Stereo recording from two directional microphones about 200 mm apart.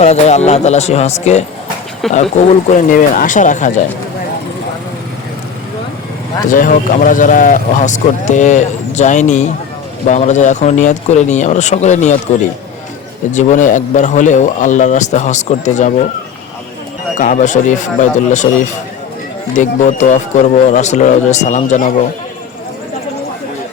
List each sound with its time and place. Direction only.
0.0 s speech: 35° left (ahead or behind)
2.0 s speech: centre (ahead or behind)
2.5 s speech: 40° left (ahead or behind)
6.5 s speech: 40° left (ahead or behind)
13.3 s speech: 40° left (ahead or behind)
17.2 s speech: 40° left (ahead or behind)